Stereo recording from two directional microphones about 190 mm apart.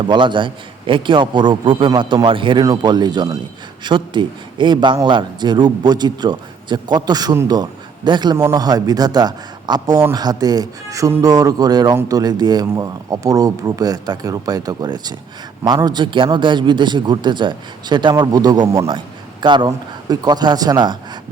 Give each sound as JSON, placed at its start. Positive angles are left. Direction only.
{"t": 0.0, "sound": "a man's voice", "side_deg": -25}